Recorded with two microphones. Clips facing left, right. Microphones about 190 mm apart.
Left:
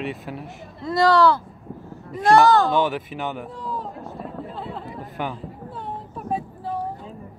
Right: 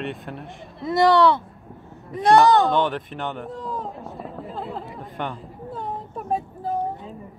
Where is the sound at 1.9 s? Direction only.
Centre (ahead or behind).